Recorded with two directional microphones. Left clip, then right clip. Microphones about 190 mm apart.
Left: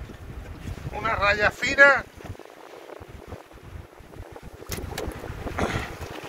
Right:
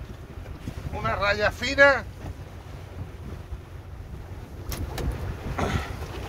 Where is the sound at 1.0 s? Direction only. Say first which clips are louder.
Left 2 dB; 20° right (ahead or behind).